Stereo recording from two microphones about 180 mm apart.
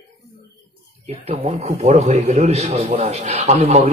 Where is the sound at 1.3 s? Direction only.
35° right (ahead or behind).